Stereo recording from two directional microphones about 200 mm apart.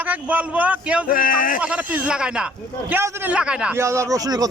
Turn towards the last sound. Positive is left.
turn(degrees=-15)  # may be behind; listen again after turning